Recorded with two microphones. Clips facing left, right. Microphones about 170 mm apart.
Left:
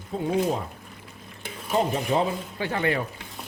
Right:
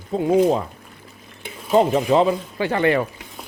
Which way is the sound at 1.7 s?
85° right.